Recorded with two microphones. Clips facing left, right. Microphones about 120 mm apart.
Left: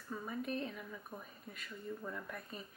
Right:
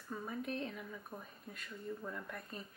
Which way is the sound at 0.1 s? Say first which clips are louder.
Left 1 dB; centre (ahead or behind).